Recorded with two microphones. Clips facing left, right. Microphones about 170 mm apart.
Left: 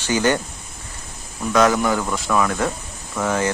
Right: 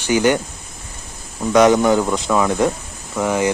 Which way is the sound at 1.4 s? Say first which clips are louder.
Right 5 dB; 20° right (ahead or behind).